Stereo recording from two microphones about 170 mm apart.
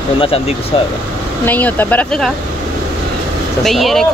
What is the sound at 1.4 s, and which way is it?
Speech, 10° left (ahead or behind).